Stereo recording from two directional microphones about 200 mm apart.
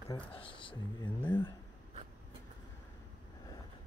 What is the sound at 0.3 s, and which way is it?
Speech, 25° left (ahead or behind).